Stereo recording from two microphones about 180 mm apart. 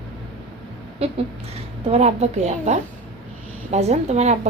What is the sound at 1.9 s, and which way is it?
A woman's voice, 35° right (ahead or behind).